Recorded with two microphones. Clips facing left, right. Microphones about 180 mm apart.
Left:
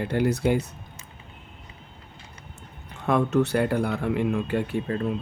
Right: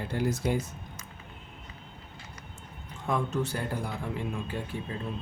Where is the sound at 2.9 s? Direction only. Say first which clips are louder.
Left 8 dB; 70° left (ahead or behind).